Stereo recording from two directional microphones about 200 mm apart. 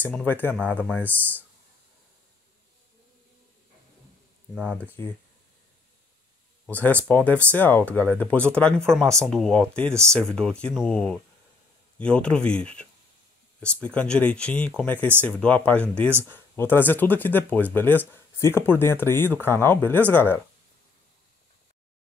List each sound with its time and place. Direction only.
0.0 s speech: 10° left (ahead or behind)
4.6 s speech: 5° left (ahead or behind)
6.6 s speech: 10° left (ahead or behind)